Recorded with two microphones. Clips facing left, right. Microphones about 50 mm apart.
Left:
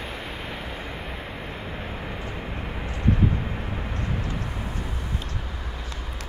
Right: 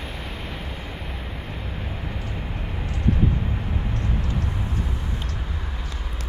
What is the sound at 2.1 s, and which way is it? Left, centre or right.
Vehicle, centre.